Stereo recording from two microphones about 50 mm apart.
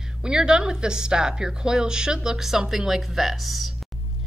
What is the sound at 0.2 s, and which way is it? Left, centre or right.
A woman's voice, centre.